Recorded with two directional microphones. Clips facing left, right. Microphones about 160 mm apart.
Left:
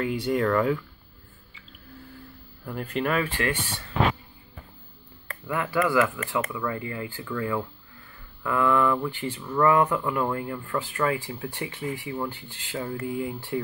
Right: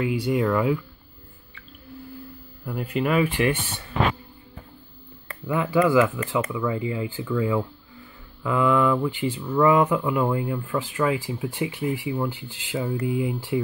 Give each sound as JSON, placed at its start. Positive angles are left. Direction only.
{"t": 0.0, "sound": "speech", "side_deg": -5}
{"t": 2.6, "sound": "speech", "side_deg": -10}
{"t": 5.5, "sound": "speech", "side_deg": -20}
{"t": 9.4, "sound": "speech", "side_deg": -5}
{"t": 9.7, "sound": "speech", "side_deg": -15}